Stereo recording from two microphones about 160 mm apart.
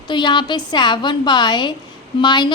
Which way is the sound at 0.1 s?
30° left (ahead or behind).